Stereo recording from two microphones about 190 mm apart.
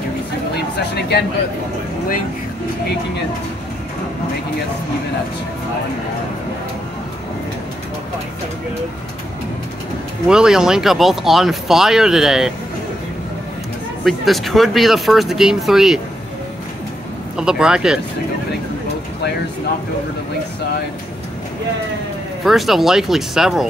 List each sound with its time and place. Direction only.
0.9 s speech: 60° left (ahead or behind)
10.2 s speech: 5° right (ahead or behind)
14.0 s speech: centre (ahead or behind)
17.4 s speech: 5° right (ahead or behind)
22.4 s speech: centre (ahead or behind)